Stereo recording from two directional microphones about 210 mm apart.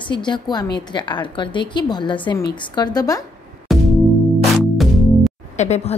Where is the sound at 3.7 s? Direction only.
Centre (ahead or behind).